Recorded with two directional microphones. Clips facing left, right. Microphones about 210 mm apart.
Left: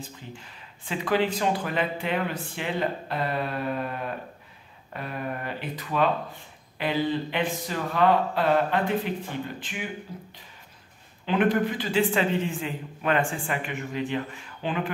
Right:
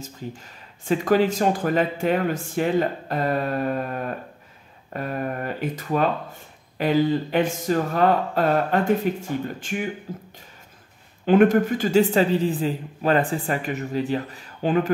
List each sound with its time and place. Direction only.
0.0 s a man's voice: 45° right (ahead or behind)